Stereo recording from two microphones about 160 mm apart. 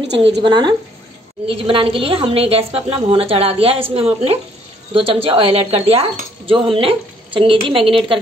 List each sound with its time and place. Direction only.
0.4 s a woman's voice: 25° right (ahead or behind)